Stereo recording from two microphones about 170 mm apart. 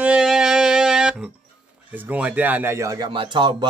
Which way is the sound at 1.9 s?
10° right (ahead or behind).